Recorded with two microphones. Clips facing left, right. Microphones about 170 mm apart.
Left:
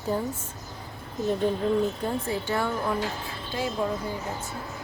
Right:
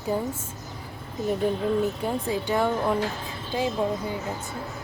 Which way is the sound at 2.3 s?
15° right (ahead or behind).